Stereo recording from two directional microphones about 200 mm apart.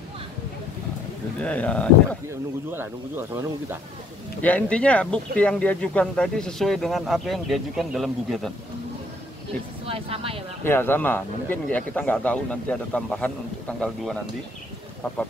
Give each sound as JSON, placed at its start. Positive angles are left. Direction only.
{"t": 1.4, "sound": "speech", "side_deg": 5}
{"t": 2.2, "sound": "speech", "side_deg": -10}
{"t": 4.4, "sound": "speech", "side_deg": 5}
{"t": 9.8, "sound": "speech", "side_deg": -30}
{"t": 10.6, "sound": "speech", "side_deg": 10}